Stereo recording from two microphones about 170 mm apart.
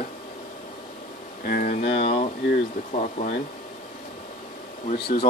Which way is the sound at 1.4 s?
60° left (ahead or behind).